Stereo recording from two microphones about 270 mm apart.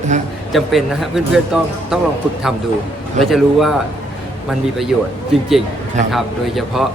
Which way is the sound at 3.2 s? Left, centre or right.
Centre.